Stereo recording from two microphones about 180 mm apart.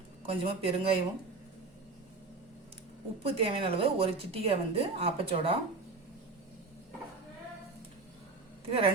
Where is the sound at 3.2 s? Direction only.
30° right (ahead or behind).